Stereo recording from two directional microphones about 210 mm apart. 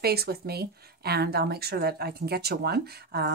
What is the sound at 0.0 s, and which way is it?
A woman's voice, 50° right (ahead or behind).